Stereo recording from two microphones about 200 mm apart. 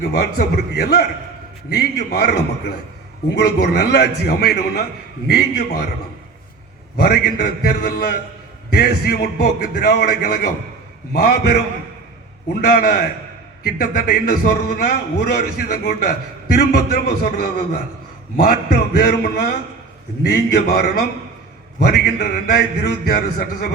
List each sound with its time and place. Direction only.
0.0 s a man's voice: 45° left (ahead or behind)
6.9 s a man's voice: 50° left (ahead or behind)
12.6 s a man's voice: 45° left (ahead or behind)